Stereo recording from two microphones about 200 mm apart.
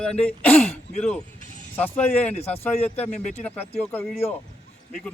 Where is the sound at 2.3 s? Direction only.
30° left (ahead or behind).